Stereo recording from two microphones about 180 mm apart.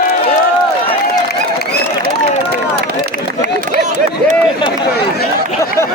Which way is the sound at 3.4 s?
40° right (ahead or behind).